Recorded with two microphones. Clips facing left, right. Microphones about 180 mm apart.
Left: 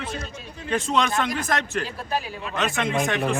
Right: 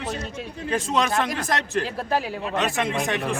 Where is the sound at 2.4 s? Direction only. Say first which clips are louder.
Right 1 dB; 35° right (ahead or behind).